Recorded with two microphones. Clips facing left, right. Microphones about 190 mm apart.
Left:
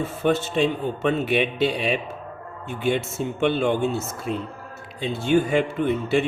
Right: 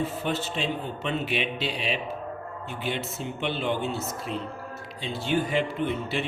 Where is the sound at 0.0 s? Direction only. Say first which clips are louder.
Left 6 dB; 50° left (ahead or behind).